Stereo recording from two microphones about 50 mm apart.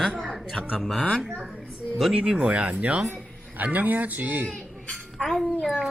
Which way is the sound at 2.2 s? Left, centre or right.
Centre.